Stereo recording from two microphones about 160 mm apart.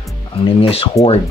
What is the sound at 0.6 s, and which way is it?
Speech, 35° left (ahead or behind).